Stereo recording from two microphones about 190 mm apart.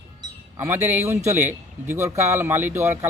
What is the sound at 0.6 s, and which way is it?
Speech, 10° right (ahead or behind).